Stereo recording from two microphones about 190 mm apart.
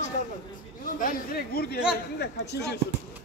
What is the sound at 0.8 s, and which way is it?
Speech, 45° left (ahead or behind).